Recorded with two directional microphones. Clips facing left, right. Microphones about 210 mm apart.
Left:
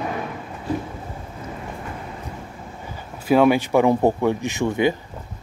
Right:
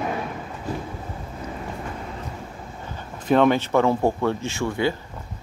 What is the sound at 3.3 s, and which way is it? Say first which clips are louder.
Speech: left 2 dB; 10° left (ahead or behind).